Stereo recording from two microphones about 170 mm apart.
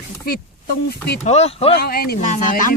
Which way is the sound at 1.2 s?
40° left (ahead or behind).